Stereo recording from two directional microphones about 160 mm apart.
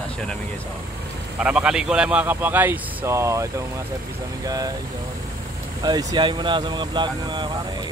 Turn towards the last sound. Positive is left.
turn(degrees=-30)  # may be behind; listen again after turning